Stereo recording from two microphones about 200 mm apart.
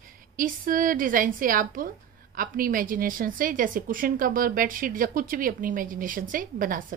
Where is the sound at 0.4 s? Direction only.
45° right (ahead or behind).